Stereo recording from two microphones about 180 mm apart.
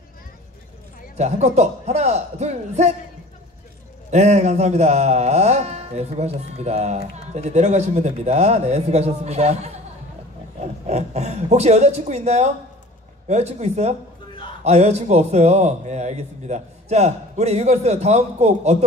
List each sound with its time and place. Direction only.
1.1 s speech: 40° right (ahead or behind)
4.1 s speech: 40° right (ahead or behind)